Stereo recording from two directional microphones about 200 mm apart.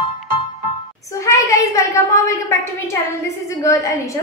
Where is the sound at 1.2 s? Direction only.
15° left (ahead or behind).